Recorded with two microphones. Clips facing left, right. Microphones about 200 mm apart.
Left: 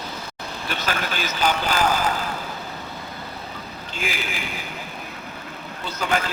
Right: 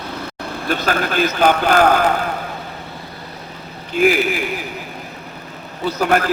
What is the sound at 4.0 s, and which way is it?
Speech, 60° right (ahead or behind).